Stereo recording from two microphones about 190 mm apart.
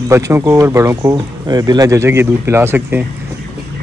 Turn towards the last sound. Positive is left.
turn(degrees=-10)  # may be behind; listen again after turning